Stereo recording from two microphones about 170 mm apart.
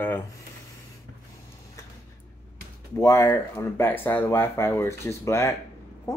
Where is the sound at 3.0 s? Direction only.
15° left (ahead or behind).